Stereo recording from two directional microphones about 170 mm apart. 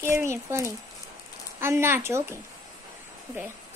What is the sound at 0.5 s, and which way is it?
A child's voice, 15° right (ahead or behind).